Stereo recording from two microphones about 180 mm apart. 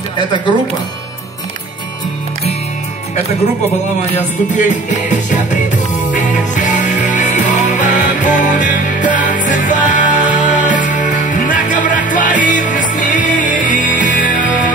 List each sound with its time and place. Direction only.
4.2 s music: 45° left (ahead or behind)